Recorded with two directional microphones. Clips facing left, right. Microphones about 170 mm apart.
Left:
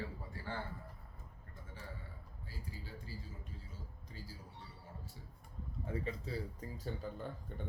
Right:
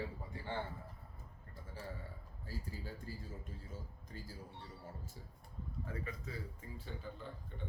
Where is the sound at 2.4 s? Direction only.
45° right (ahead or behind).